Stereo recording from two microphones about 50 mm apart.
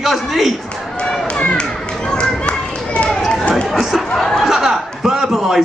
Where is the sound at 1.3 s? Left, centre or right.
Left.